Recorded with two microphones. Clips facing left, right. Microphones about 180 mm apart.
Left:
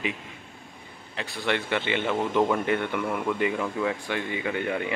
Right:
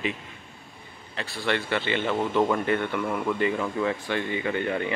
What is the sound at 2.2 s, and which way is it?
Speech, 5° left (ahead or behind).